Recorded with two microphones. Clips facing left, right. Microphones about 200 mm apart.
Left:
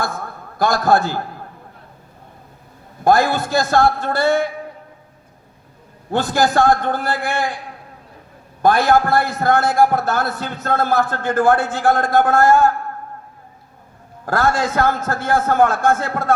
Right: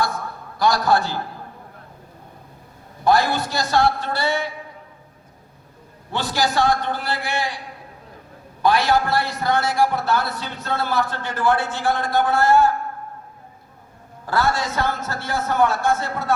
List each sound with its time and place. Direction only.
0.6 s a man's voice: 50° left (ahead or behind)
3.0 s a man's voice: 50° left (ahead or behind)
6.1 s a man's voice: 50° left (ahead or behind)
8.6 s a man's voice: 50° left (ahead or behind)
14.3 s a man's voice: 50° left (ahead or behind)